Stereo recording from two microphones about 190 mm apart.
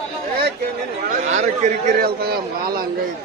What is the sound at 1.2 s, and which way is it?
Speech, 40° right (ahead or behind).